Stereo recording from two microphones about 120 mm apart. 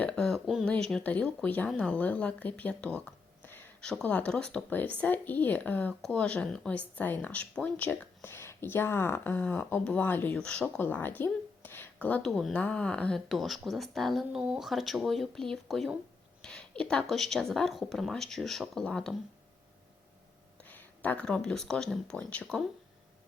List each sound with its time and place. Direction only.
0.0 s a sound: 5° left (ahead or behind)
0.6 s speech: 5° left (ahead or behind)
20.7 s speech: 15° left (ahead or behind)